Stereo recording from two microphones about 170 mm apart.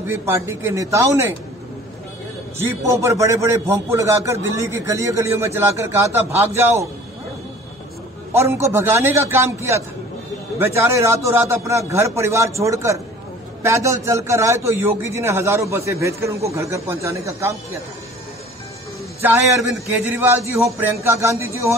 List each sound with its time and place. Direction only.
0.0 s a man's voice: 15° right (ahead or behind)
2.6 s a man's voice: 15° right (ahead or behind)
8.3 s a man's voice: 15° right (ahead or behind)
20.1 s a man's voice: 10° right (ahead or behind)